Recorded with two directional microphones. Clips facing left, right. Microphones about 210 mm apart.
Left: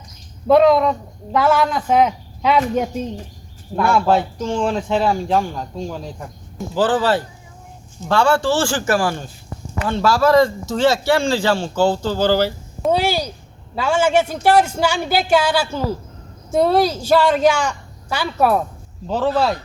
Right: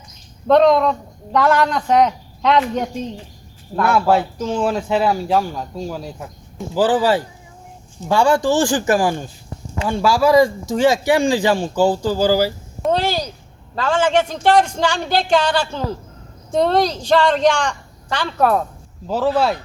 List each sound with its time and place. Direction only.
0.4 s speech: 5° left (ahead or behind)
12.9 s a man's voice: 10° left (ahead or behind)
19.0 s speech: 5° right (ahead or behind)